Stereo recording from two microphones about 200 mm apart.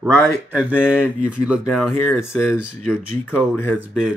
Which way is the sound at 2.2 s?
15° left (ahead or behind).